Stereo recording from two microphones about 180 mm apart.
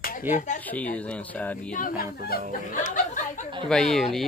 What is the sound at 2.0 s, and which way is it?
Speech, 55° left (ahead or behind).